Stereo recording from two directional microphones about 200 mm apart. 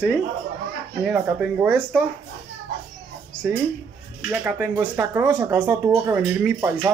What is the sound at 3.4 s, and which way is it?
Speech, 10° right (ahead or behind).